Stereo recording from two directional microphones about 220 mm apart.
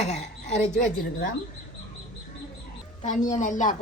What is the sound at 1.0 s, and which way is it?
Speech, 40° left (ahead or behind).